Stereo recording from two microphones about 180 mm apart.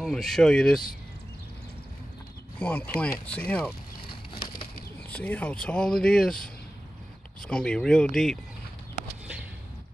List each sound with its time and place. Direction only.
0.0 s speech: centre (ahead or behind)
2.6 s speech: 10° left (ahead or behind)
4.1 s a sound: 30° left (ahead or behind)
5.1 s speech: 10° left (ahead or behind)